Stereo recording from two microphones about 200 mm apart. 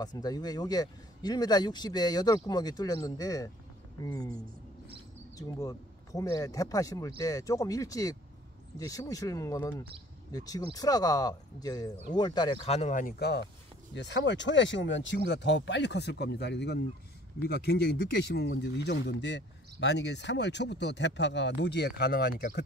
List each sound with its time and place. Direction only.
0.0 s speech: 20° left (ahead or behind)
5.6 s speech: 15° left (ahead or behind); by 22.7 s 55° left (ahead or behind)